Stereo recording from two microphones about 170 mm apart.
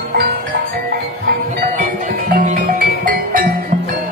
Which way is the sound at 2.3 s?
50° right (ahead or behind).